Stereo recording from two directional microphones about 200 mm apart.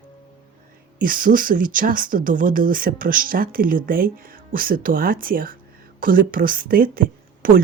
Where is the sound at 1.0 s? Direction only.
45° right (ahead or behind).